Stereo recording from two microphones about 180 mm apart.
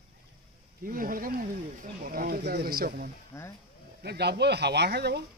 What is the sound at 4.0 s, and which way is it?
Speech, 65° right (ahead or behind).